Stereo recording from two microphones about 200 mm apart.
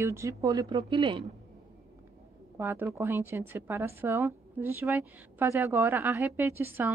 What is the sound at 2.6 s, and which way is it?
A woman's voice, 10° right (ahead or behind).